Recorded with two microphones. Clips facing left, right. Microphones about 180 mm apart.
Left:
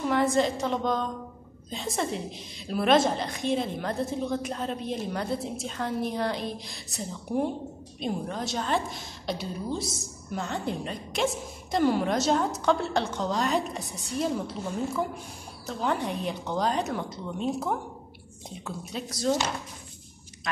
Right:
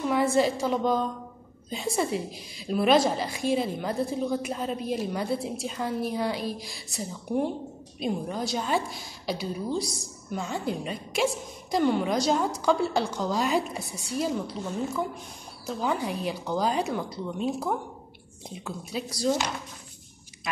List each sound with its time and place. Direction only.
0.3 s a woman's voice: 5° right (ahead or behind)